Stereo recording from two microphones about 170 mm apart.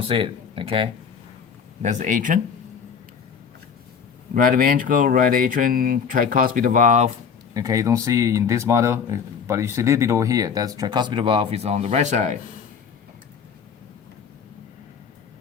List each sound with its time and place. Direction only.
0.0 s speech: 30° right (ahead or behind)
1.8 s speech: 45° right (ahead or behind)
4.4 s speech: 55° right (ahead or behind)
7.5 s speech: 20° right (ahead or behind); by 12.4 s 45° right (ahead or behind)